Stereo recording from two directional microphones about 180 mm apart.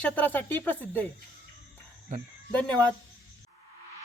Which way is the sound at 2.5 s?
10° left (ahead or behind).